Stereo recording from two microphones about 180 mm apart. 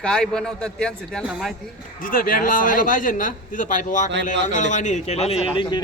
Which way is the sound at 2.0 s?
50° left (ahead or behind).